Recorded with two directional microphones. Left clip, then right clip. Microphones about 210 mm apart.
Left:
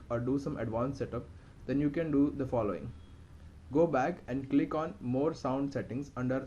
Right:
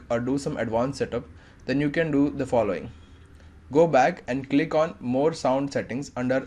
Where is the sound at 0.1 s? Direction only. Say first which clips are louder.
Right 8 dB; 25° right (ahead or behind).